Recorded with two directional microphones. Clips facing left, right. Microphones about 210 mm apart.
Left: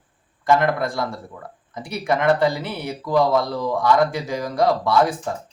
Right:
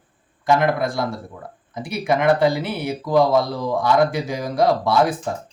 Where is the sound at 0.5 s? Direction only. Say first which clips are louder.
Right 1 dB; 5° right (ahead or behind).